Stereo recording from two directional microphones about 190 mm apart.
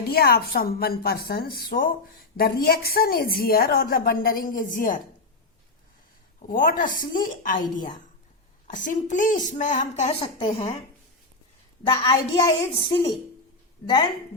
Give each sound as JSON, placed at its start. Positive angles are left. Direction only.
{"t": 0.1, "sound": "a woman's voice", "side_deg": 55}
{"t": 6.5, "sound": "a woman's voice", "side_deg": 45}
{"t": 12.0, "sound": "a child's voice", "side_deg": 20}